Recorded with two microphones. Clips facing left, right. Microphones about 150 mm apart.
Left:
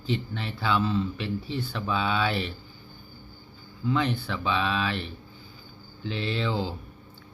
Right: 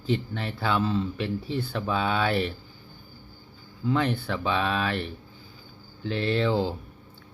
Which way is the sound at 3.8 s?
50° right (ahead or behind).